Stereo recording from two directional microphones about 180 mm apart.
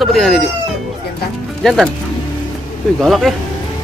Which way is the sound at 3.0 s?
Centre (ahead or behind).